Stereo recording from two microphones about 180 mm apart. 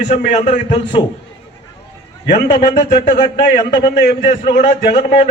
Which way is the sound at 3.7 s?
25° left (ahead or behind).